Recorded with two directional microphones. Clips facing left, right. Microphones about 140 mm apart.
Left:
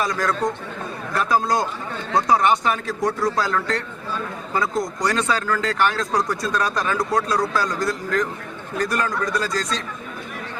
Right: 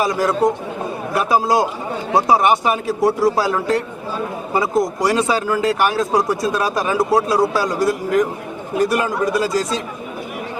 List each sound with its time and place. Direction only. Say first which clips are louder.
0.0 s speech: right 6 dB; 25° right (ahead or behind)
1.1 s a man's voice: right 4 dB; 15° right (ahead or behind)
2.1 s speech: right 3 dB; 25° right (ahead or behind)
2.4 s a man's voice: right 3 dB; 15° right (ahead or behind)
3.0 s speech: right 7 dB; 25° right (ahead or behind)
3.4 s a man's voice: right 5 dB; 10° right (ahead or behind)
4.2 s speech: right 5 dB; 20° right (ahead or behind)
5.3 s a man's voice: right 5 dB; 10° right (ahead or behind)
6.5 s a man's voice: right 3 dB; 10° right (ahead or behind)
6.7 s speech: right 5 dB; 20° right (ahead or behind)